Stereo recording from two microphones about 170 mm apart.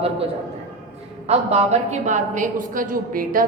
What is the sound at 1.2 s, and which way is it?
A woman's voice, 40° right (ahead or behind).